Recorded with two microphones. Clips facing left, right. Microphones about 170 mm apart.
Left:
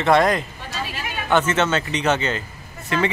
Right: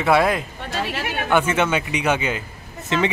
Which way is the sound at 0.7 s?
70° right (ahead or behind).